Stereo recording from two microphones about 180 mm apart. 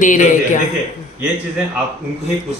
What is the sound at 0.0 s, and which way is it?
Speech, 45° left (ahead or behind).